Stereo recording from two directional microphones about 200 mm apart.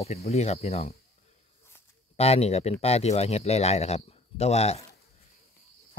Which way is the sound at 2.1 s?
30° left (ahead or behind).